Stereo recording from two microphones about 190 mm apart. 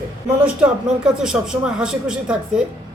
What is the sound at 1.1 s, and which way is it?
Speech, 5° right (ahead or behind).